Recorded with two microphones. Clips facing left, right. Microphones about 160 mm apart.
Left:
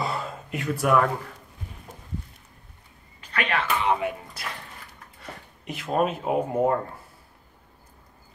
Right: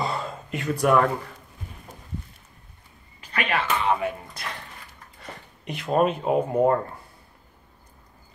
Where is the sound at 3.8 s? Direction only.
20° left (ahead or behind).